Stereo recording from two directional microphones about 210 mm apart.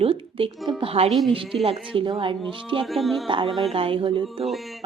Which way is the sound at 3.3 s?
25° right (ahead or behind).